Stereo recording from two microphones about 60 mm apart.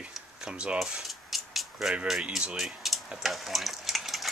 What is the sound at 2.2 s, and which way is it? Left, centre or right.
Speech, right.